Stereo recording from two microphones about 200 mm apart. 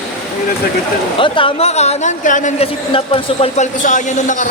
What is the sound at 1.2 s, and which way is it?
Speech, 25° left (ahead or behind).